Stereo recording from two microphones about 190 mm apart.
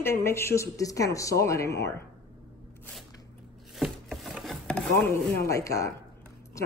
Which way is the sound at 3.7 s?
Centre (ahead or behind).